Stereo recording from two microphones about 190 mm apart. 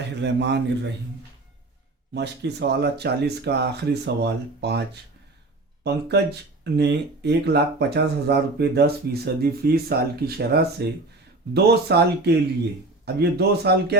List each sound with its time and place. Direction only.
0.2 s speech: 65° right (ahead or behind)
2.1 s speech: 60° right (ahead or behind)
5.8 s speech: 60° right (ahead or behind)
13.3 s speech: 55° right (ahead or behind)